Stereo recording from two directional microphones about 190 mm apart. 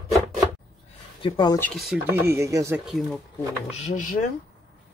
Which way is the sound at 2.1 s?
15° right (ahead or behind).